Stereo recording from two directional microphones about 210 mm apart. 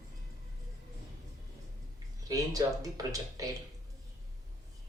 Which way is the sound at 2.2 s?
15° right (ahead or behind).